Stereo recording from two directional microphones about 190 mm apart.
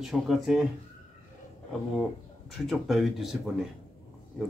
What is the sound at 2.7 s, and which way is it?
Speech, centre (ahead or behind).